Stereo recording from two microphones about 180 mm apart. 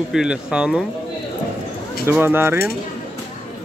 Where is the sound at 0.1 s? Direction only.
5° right (ahead or behind).